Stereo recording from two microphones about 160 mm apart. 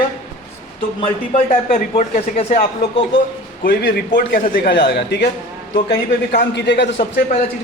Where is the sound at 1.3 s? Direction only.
60° left (ahead or behind).